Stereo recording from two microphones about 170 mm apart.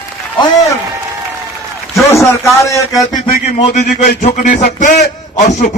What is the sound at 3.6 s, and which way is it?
A man's voice, 45° left (ahead or behind).